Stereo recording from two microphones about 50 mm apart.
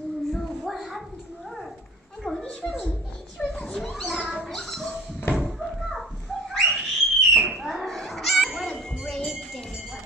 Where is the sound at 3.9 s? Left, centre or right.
Centre.